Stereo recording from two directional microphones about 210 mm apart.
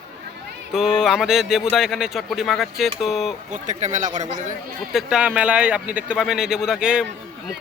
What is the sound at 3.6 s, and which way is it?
Speech, 35° right (ahead or behind).